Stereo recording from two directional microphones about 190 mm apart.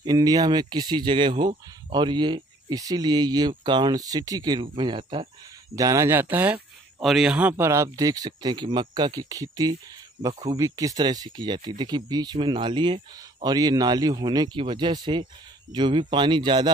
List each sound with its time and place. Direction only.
0.0 s speech: 20° right (ahead or behind)